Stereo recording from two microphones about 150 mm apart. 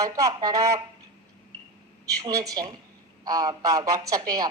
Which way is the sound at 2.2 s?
25° right (ahead or behind).